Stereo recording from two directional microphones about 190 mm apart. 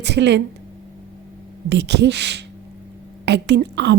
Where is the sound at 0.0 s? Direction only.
65° right (ahead or behind).